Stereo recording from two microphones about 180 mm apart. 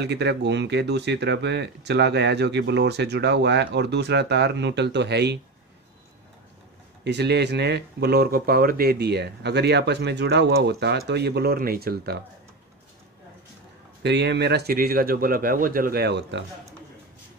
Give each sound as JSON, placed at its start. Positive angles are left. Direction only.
{"t": 0.0, "sound": "speech", "side_deg": -70}
{"t": 7.1, "sound": "speech", "side_deg": -70}
{"t": 14.0, "sound": "speech", "side_deg": -70}